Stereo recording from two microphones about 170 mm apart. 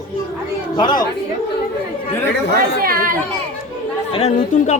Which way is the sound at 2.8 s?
55° right (ahead or behind).